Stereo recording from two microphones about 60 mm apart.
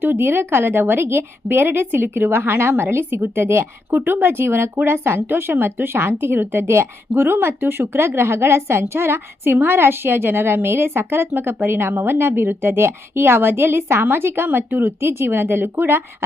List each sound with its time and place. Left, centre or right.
0.0 s a woman's voice: right